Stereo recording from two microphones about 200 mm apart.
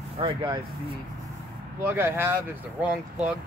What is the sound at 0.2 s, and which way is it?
Speech, 25° right (ahead or behind).